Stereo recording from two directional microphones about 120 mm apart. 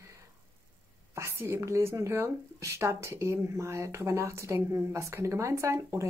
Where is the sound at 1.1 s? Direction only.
20° right (ahead or behind).